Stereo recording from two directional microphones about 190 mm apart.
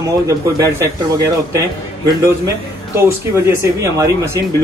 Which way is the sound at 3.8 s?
15° right (ahead or behind).